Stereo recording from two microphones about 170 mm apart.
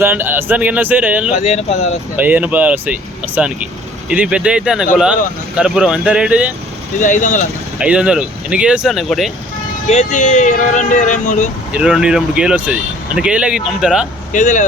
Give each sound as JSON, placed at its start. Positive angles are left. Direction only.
{"t": 0.0, "sound": "speech", "side_deg": -10}
{"t": 1.3, "sound": "speech", "side_deg": 45}
{"t": 2.1, "sound": "speech", "side_deg": -10}
{"t": 7.0, "sound": "speech", "side_deg": 50}
{"t": 7.8, "sound": "speech", "side_deg": -5}
{"t": 9.9, "sound": "speech", "side_deg": 45}
{"t": 11.7, "sound": "speech", "side_deg": -5}
{"t": 14.3, "sound": "speech", "side_deg": 50}